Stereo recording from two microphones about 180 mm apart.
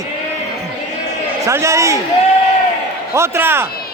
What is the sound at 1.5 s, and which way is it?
Speech, 15° right (ahead or behind).